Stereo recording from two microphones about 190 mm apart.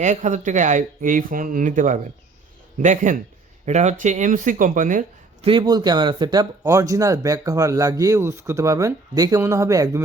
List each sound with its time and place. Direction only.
0.0 s speech: 40° right (ahead or behind)
5.5 s speech: 25° right (ahead or behind)